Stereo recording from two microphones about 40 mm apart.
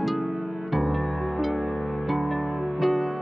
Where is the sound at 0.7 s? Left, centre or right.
Centre.